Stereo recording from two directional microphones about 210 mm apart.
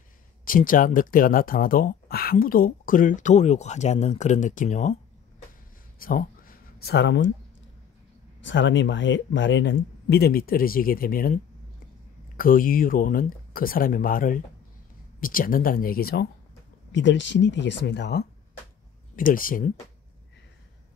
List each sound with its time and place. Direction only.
0.5 s speech: 40° left (ahead or behind)
5.9 s a sound: 45° left (ahead or behind)
8.4 s speech: 60° left (ahead or behind)
16.9 s speech: 60° left (ahead or behind)
19.1 s speech: 40° left (ahead or behind)